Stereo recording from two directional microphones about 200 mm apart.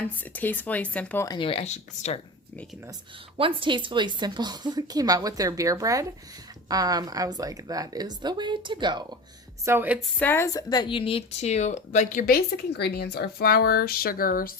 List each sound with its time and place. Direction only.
0.0 s speech: 10° left (ahead or behind); by 2.2 s 35° left (ahead or behind)
3.3 s a woman's voice: 25° right (ahead or behind)
9.6 s a woman's voice: 10° right (ahead or behind)
10.2 s speech: 10° left (ahead or behind); by 14.5 s 45° left (ahead or behind)